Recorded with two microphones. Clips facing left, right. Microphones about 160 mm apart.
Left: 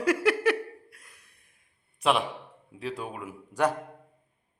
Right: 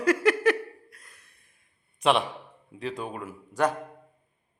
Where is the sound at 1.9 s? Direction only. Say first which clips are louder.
Right 2 dB; 5° left (ahead or behind).